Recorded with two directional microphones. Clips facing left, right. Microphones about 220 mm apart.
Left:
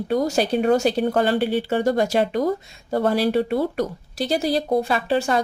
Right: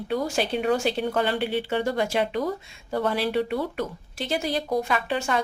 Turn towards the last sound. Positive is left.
turn(degrees=35)  # may be behind; listen again after turning